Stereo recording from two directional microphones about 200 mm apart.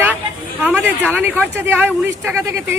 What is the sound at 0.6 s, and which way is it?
Speech, 10° right (ahead or behind).